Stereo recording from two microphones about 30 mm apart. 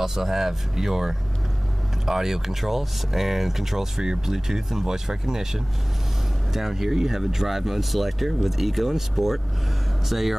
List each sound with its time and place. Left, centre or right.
0.0 s speech: centre